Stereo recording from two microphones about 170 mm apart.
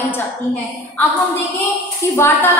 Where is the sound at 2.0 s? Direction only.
15° left (ahead or behind).